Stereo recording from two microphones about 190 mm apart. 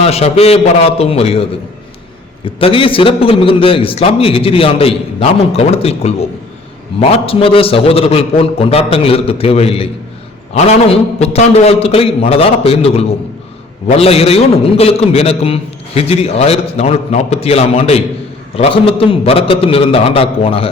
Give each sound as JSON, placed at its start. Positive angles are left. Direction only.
{"t": 0.0, "sound": "a man's voice", "side_deg": 35}